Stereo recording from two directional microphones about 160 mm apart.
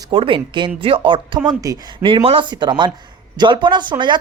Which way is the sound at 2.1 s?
35° right (ahead or behind).